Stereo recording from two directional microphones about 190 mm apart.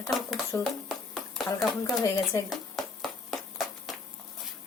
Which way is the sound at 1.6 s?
Centre (ahead or behind).